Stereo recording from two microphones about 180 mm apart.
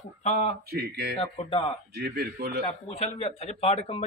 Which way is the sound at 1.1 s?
30° left (ahead or behind).